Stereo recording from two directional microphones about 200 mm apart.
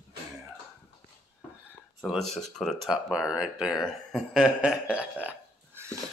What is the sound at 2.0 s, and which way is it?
Speech, centre (ahead or behind).